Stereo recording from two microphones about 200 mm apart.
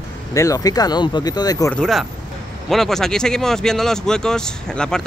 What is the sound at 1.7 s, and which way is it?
Speech, centre (ahead or behind).